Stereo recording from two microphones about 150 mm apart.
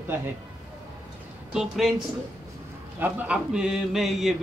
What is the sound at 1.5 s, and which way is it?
Speech, 5° right (ahead or behind).